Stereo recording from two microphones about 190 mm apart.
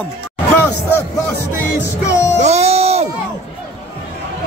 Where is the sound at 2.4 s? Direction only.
35° right (ahead or behind).